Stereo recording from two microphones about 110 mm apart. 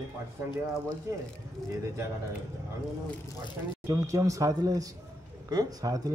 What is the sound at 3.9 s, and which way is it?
A man's voice, 30° right (ahead or behind).